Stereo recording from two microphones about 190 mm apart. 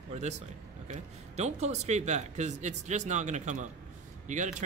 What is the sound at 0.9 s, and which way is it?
Speech, 35° right (ahead or behind).